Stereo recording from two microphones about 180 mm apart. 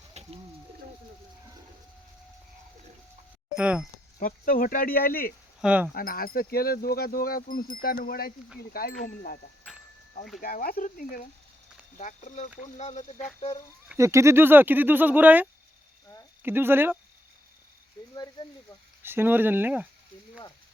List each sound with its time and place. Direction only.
0.1 s bird: 35° right (ahead or behind)
3.5 s speech: 5° right (ahead or behind)
4.2 s speech: 50° left (ahead or behind)
5.5 s speech: 5° right (ahead or behind)
5.9 s speech: 55° left (ahead or behind)
10.4 s speech: 55° left (ahead or behind)
13.8 s speech: 15° right (ahead or behind)
18.1 s speech: 20° left (ahead or behind)
19.0 s speech: 10° right (ahead or behind)